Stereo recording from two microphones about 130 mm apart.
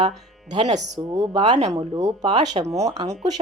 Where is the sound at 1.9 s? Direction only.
30° right (ahead or behind).